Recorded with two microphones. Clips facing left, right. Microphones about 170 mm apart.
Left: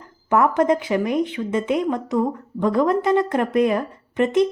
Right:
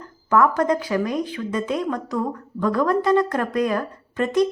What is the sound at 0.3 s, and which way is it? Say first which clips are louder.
Speech: left 1 dB; 20° left (ahead or behind).